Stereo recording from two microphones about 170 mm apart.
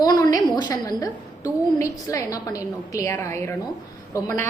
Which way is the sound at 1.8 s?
20° left (ahead or behind).